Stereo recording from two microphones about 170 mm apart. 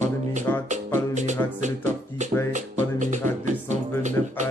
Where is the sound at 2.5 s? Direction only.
45° right (ahead or behind).